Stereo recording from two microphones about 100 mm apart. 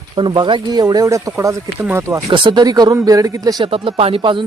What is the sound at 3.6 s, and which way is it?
Speech, 70° right (ahead or behind).